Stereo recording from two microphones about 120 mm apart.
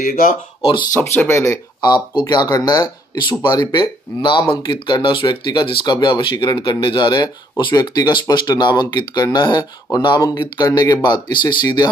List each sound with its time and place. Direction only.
1.1 s speech: 20° left (ahead or behind)
1.8 s speech: 35° left (ahead or behind)